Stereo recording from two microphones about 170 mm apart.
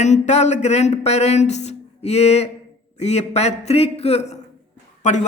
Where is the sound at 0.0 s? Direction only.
40° left (ahead or behind).